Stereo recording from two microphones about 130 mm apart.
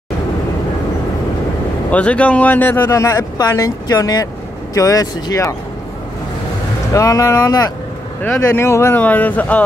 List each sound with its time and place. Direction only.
1.9 s speech: 10° left (ahead or behind)
2.9 s speech: 25° left (ahead or behind)
6.9 s speech: 25° left (ahead or behind)
8.2 s speech: 15° left (ahead or behind)